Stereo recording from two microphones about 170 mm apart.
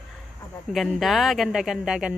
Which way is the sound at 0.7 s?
Centre (ahead or behind).